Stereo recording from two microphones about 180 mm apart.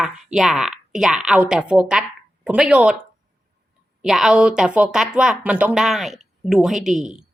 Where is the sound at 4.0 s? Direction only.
5° right (ahead or behind).